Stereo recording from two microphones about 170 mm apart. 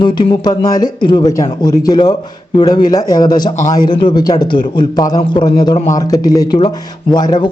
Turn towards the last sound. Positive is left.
turn(degrees=25)  # may be behind; listen again after turning